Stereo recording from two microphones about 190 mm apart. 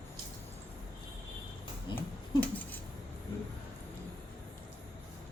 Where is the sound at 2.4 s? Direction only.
10° left (ahead or behind).